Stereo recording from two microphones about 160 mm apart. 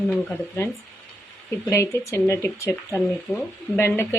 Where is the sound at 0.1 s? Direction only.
10° left (ahead or behind).